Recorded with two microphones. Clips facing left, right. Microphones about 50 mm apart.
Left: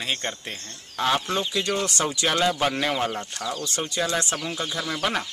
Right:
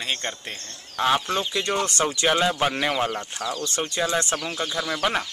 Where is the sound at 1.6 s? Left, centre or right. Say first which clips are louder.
Right 1 dB; right.